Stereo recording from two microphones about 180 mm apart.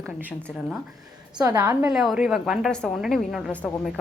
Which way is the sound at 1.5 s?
20° right (ahead or behind).